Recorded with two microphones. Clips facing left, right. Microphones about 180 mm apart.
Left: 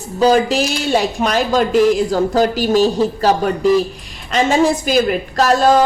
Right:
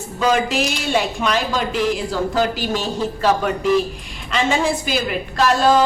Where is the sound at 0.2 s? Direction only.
35° left (ahead or behind).